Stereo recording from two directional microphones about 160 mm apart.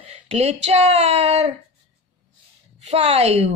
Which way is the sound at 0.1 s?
40° right (ahead or behind).